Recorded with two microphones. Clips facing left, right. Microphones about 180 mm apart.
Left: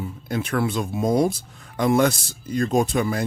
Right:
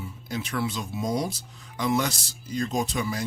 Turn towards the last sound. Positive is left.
turn(degrees=55)  # may be behind; listen again after turning